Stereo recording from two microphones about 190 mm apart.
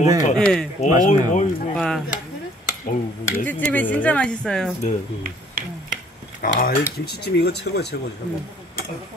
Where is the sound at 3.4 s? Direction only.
10° left (ahead or behind).